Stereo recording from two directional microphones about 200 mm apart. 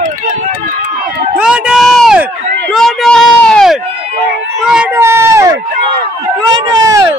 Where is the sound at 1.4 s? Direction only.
5° right (ahead or behind).